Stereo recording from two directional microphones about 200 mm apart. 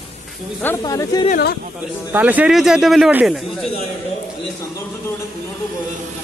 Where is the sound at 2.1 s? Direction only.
10° right (ahead or behind).